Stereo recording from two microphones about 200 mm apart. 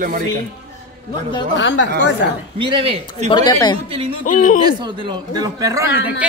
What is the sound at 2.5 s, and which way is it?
Speech, 25° right (ahead or behind).